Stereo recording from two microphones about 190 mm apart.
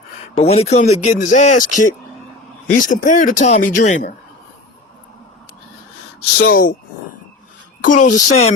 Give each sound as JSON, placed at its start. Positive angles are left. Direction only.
{"t": 0.3, "sound": "speech", "side_deg": 35}
{"t": 6.4, "sound": "speech", "side_deg": 50}
{"t": 7.8, "sound": "speech", "side_deg": 40}